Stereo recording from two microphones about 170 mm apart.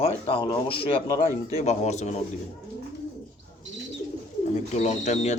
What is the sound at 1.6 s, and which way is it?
Speech, 40° left (ahead or behind).